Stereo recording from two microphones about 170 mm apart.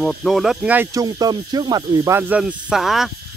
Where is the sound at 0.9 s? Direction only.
20° right (ahead or behind).